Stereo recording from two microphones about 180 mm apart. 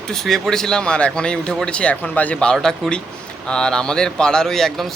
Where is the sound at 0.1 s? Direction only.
Centre (ahead or behind).